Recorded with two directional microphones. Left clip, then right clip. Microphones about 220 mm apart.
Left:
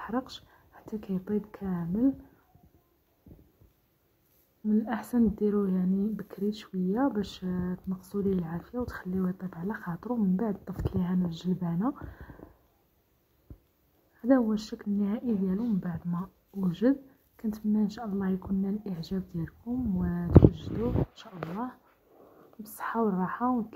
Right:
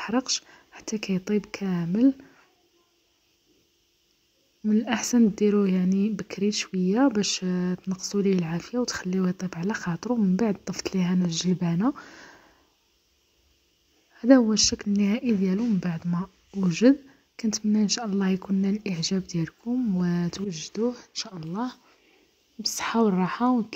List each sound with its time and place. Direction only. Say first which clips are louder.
0.0 s a sound: right 8 dB; 40° right (ahead or behind)
0.8 s speech: right 6 dB; 35° right (ahead or behind)
4.6 s speech: right 5 dB; 35° right (ahead or behind)
11.7 s speech: right 5 dB; 40° right (ahead or behind)
14.2 s speech: right 7 dB; 35° right (ahead or behind)
22.8 s speech: right 5 dB; 40° right (ahead or behind)